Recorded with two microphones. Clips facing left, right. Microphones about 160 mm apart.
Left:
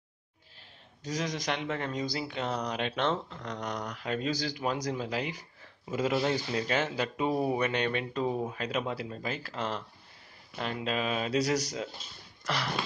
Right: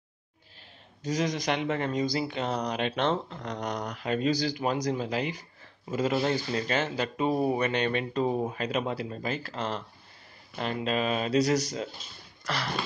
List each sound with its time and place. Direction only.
1.0 s speech: centre (ahead or behind)
3.1 s speech: 30° right (ahead or behind)
3.9 s speech: centre (ahead or behind); by 12.8 s 15° left (ahead or behind)